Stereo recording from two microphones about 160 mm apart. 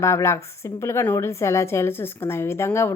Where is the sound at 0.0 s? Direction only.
15° left (ahead or behind).